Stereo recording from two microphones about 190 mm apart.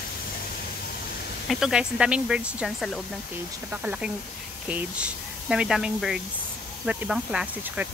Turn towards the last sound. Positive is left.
turn(degrees=-5)  # may be behind; listen again after turning